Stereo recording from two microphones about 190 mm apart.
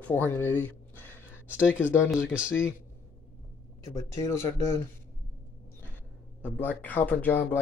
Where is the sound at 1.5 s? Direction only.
10° right (ahead or behind).